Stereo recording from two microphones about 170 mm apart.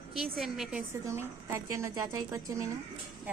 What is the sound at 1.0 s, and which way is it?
Speech, 15° right (ahead or behind).